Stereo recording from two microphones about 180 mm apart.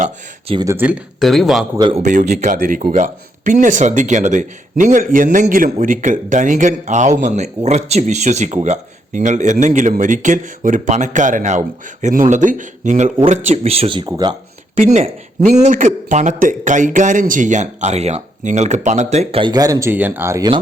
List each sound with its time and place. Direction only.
0.0 s a sound: 30° right (ahead or behind)
0.6 s speech: 15° right (ahead or behind)
1.2 s speech: centre (ahead or behind)
1.8 s a man's voice: 30° right (ahead or behind)
2.0 s a man's voice: 45° right (ahead or behind); by 14.3 s 25° right (ahead or behind)
14.8 s a man's voice: 40° right (ahead or behind); by 20.6 s 20° right (ahead or behind)